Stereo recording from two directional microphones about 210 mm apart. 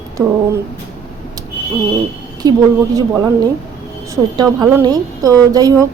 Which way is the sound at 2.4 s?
20° right (ahead or behind).